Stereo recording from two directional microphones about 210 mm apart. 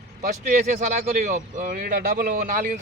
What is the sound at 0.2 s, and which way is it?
Speech, 40° right (ahead or behind).